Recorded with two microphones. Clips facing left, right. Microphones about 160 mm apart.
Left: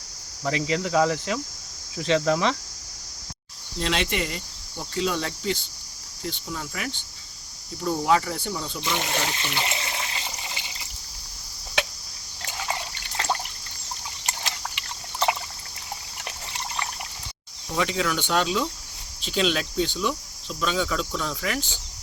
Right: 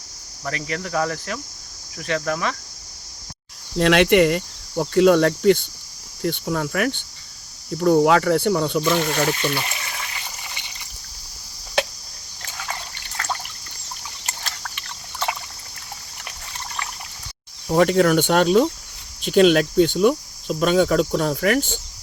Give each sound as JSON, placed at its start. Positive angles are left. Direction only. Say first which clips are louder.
{"t": 0.4, "sound": "cricket", "louder": "left 3 dB", "side_deg": 20}
{"t": 2.0, "sound": "speech", "louder": "left 2 dB", "side_deg": 20}
{"t": 3.8, "sound": "cricket", "louder": "right 12 dB", "side_deg": -65}
{"t": 9.5, "sound": "water", "louder": "right 2 dB", "side_deg": 25}
{"t": 12.6, "sound": "trickle", "louder": "left 2 dB", "side_deg": 20}
{"t": 14.4, "sound": "a sound", "louder": "left 1 dB", "side_deg": 20}
{"t": 17.7, "sound": "speech", "louder": "right 10 dB", "side_deg": -50}